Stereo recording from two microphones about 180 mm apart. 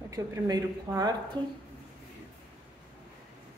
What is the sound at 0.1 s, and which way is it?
A woman's voice, 20° right (ahead or behind).